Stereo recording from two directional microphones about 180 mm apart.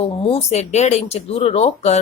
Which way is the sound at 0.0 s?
35° left (ahead or behind).